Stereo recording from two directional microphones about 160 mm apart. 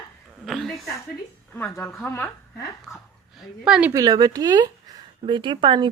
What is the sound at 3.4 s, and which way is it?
Speech, 5° right (ahead or behind).